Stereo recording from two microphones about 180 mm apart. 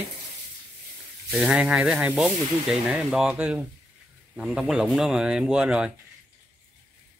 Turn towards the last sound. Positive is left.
turn(degrees=-5)  # may be behind; listen again after turning